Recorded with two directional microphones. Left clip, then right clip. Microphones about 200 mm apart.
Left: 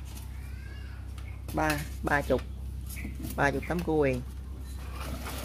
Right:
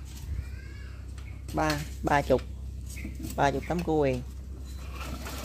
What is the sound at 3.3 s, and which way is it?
Speech, 5° right (ahead or behind).